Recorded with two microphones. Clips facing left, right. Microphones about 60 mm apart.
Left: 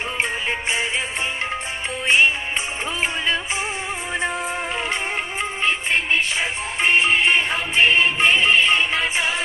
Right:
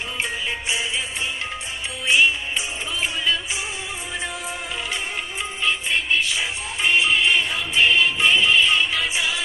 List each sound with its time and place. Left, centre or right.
0.7 s music: left
2.0 s music: left
5.4 s music: left